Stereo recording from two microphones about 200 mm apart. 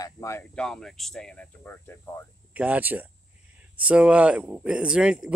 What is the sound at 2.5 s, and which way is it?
Speech, 5° right (ahead or behind).